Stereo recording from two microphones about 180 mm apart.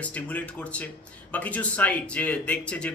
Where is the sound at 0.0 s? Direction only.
5° left (ahead or behind).